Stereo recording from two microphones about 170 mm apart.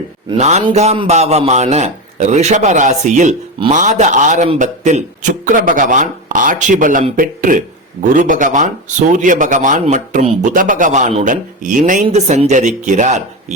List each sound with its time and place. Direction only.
0.3 s a man's voice: 40° right (ahead or behind)
12.0 s speech: 35° right (ahead or behind)